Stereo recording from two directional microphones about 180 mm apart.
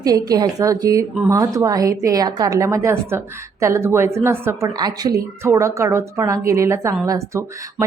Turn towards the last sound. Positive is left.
turn(degrees=-15)  # may be behind; listen again after turning